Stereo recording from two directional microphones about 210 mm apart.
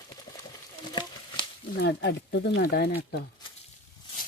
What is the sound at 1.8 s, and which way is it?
Speech, 55° left (ahead or behind).